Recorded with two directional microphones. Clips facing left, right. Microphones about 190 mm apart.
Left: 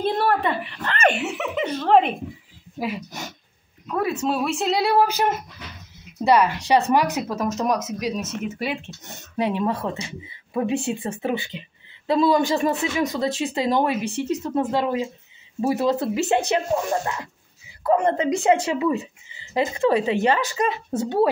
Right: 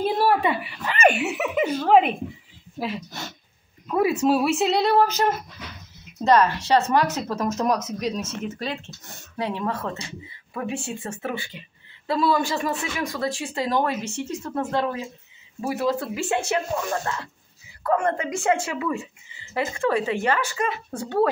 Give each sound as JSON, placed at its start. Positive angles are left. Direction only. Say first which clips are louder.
{"t": 0.0, "sound": "speech", "louder": "right 1 dB", "side_deg": -10}
{"t": 2.8, "sound": "speech", "louder": "left 1 dB", "side_deg": 15}
{"t": 3.9, "sound": "a woman's voice", "louder": "right 3 dB", "side_deg": -10}